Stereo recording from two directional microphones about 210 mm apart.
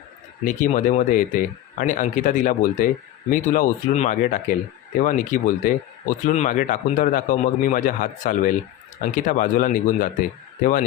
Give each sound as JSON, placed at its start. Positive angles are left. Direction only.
{"t": 0.4, "sound": "speech", "side_deg": 35}